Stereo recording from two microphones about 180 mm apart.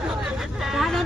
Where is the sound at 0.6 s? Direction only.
Centre (ahead or behind).